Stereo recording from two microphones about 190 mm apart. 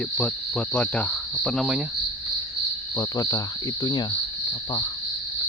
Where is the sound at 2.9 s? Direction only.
15° left (ahead or behind).